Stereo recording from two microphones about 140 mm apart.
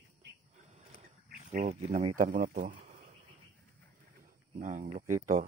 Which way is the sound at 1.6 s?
50° right (ahead or behind).